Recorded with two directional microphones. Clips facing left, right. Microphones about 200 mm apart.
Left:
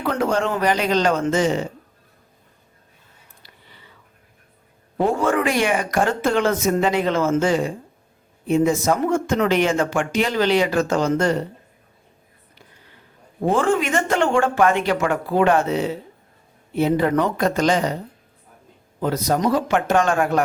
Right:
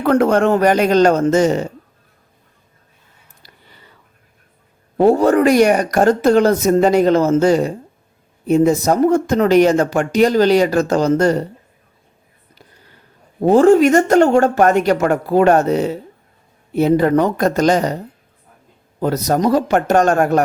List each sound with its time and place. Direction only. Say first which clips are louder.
0.0 s a man's voice: right 8 dB; 55° right (ahead or behind)
3.4 s a sound: right 4 dB; 40° right (ahead or behind)
4.9 s speech: right 8 dB; 40° right (ahead or behind)
13.4 s a man's voice: right 9 dB; 40° right (ahead or behind)
18.9 s speech: right 4 dB; 40° right (ahead or behind)